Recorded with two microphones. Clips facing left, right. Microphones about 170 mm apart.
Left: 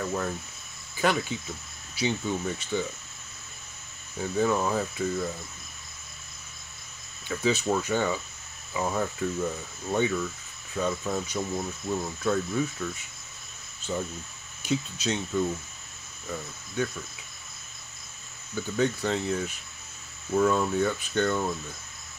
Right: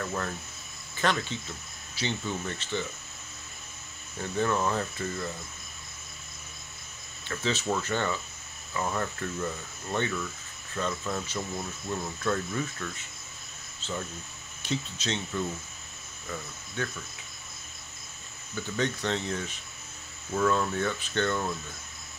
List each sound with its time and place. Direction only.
0.0 s cricket: 10° left (ahead or behind)
0.9 s speech: 10° left (ahead or behind)
4.2 s speech: 10° left (ahead or behind)
7.2 s speech: 10° left (ahead or behind)
18.5 s speech: 5° left (ahead or behind)